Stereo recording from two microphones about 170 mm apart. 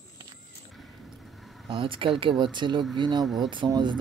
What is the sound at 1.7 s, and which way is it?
Speech, 30° right (ahead or behind).